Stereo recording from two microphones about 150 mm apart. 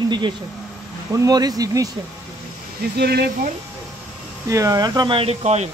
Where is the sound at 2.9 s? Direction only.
90° right.